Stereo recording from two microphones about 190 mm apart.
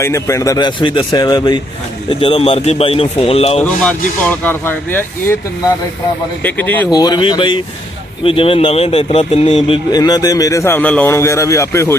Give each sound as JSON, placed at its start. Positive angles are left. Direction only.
{"t": 0.0, "sound": "speech", "side_deg": 15}
{"t": 3.6, "sound": "a man's voice", "side_deg": 5}
{"t": 6.9, "sound": "a man's voice", "side_deg": 20}